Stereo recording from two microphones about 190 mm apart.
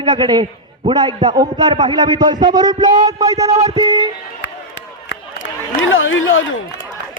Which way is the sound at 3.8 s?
20° right (ahead or behind).